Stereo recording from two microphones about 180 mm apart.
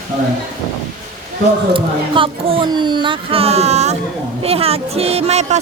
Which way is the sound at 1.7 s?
30° right (ahead or behind).